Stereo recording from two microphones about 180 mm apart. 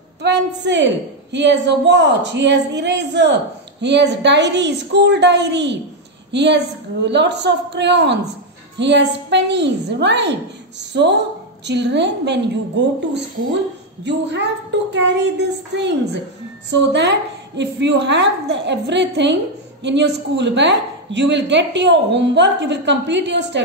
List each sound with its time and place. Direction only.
0.2 s speech: 75° right (ahead or behind)
17.6 s speech: 75° right (ahead or behind)